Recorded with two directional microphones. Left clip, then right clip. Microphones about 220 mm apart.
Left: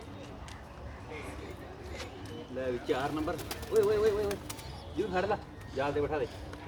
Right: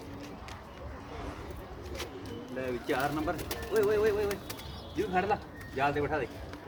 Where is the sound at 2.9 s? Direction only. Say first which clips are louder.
Right 3 dB; 15° right (ahead or behind).